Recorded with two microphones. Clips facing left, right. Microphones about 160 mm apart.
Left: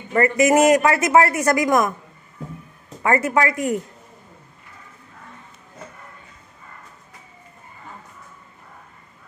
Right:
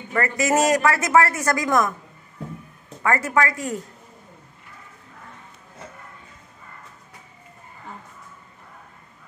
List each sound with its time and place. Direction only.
0.1 s speech: 20° left (ahead or behind)
3.0 s speech: 20° left (ahead or behind)